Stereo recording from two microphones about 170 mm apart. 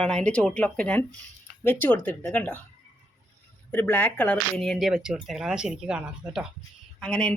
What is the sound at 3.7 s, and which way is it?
Speech, 10° left (ahead or behind).